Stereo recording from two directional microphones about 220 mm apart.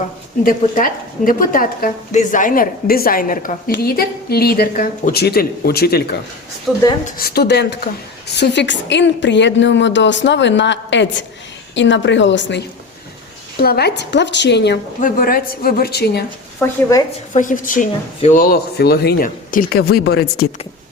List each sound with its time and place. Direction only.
0.4 s a woman's voice: 40° left (ahead or behind)
6.7 s a woman's voice: centre (ahead or behind)
7.0 s a woman's voice: 45° left (ahead or behind)
16.6 s a woman's voice: 10° left (ahead or behind)
17.3 s speech: 35° left (ahead or behind)